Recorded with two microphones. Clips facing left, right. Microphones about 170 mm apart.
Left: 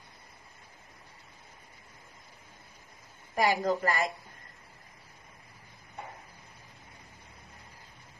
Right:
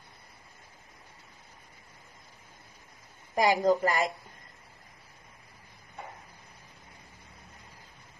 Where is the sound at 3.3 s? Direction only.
20° right (ahead or behind).